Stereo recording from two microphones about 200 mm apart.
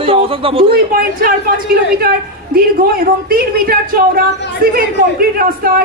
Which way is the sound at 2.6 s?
50° right (ahead or behind).